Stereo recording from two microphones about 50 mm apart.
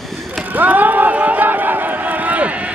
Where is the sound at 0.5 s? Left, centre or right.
Right.